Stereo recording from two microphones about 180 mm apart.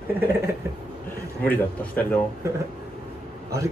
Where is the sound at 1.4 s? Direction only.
10° left (ahead or behind).